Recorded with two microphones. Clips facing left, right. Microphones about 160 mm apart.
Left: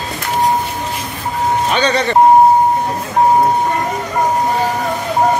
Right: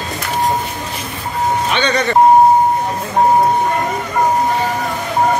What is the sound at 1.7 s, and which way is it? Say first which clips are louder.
Speech: left 2 dB; 35° left (ahead or behind).